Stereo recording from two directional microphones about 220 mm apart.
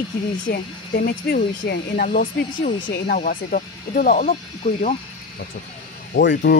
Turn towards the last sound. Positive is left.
turn(degrees=50)  # may be behind; listen again after turning